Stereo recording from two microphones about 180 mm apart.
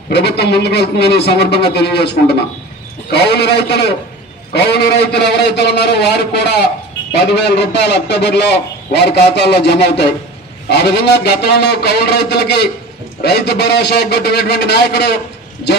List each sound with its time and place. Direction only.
0.1 s a man's voice: 65° left (ahead or behind)